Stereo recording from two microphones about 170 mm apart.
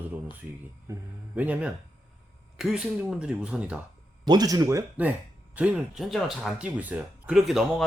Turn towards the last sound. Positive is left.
turn(degrees=-5)  # may be behind; listen again after turning